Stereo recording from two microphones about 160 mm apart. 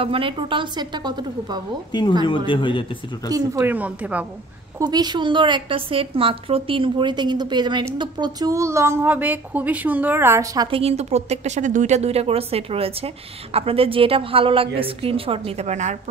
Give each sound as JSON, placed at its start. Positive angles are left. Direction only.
{"t": 0.0, "sound": "a woman's voice", "side_deg": -35}
{"t": 1.9, "sound": "speech", "side_deg": 25}
{"t": 3.3, "sound": "a woman's voice", "side_deg": -20}
{"t": 4.7, "sound": "a woman's voice", "side_deg": -25}
{"t": 10.7, "sound": "a woman's voice", "side_deg": -40}